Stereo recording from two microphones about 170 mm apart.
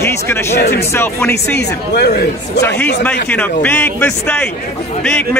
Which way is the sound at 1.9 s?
75° left (ahead or behind).